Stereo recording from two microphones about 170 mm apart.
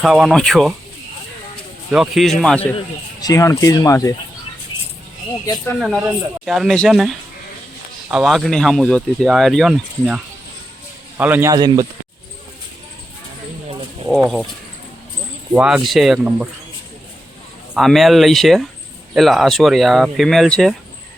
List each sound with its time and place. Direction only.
0.0 s speech: centre (ahead or behind)
1.9 s speech: centre (ahead or behind)
2.7 s speech: 20° left (ahead or behind)
5.8 s speech: 5° right (ahead or behind)
11.2 s a man's voice: 10° right (ahead or behind)
14.1 s speech: centre (ahead or behind)
15.5 s speech: 5° right (ahead or behind)
17.7 s speech: centre (ahead or behind)